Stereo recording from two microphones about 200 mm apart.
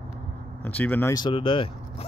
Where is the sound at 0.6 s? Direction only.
10° left (ahead or behind); by 1.7 s 25° left (ahead or behind).